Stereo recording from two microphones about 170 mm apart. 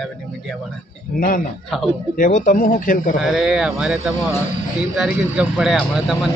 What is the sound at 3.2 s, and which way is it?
A man's voice, centre (ahead or behind).